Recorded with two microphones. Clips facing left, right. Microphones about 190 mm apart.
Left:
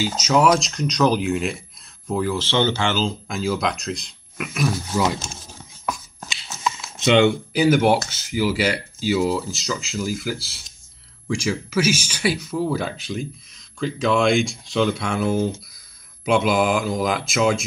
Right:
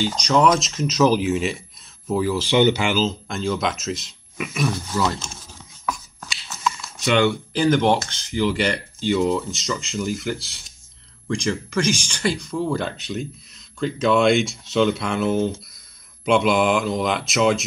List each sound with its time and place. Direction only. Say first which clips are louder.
0.0 s speech: even; 5° left (ahead or behind); by 3.0 s 15° right (ahead or behind)
3.0 s speech: right 1 dB; centre (ahead or behind)
4.9 s speech: left 3 dB; 15° left (ahead or behind)
5.3 s a sound: left 2 dB; 35° left (ahead or behind)
7.0 s speech: left 3 dB; 20° left (ahead or behind)
7.5 s speech: left 1 dB; 10° left (ahead or behind)